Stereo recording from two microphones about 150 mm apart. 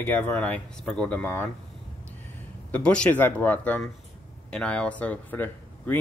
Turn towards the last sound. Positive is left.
turn(degrees=10)  # may be behind; listen again after turning